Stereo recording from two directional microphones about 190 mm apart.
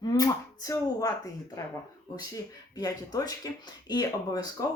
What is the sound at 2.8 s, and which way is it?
Speech, 20° left (ahead or behind).